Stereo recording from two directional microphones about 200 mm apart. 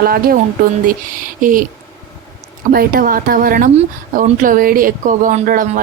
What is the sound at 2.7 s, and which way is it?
Speech, 45° right (ahead or behind).